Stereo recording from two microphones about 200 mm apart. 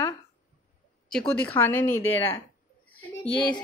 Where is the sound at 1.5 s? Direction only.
10° left (ahead or behind).